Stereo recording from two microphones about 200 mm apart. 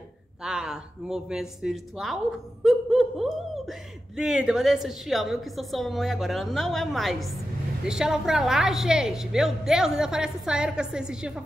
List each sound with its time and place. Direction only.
0.4 s a woman's voice: 5° right (ahead or behind)
2.6 s a sound: centre (ahead or behind)
4.2 s a woman's voice: 5° right (ahead or behind)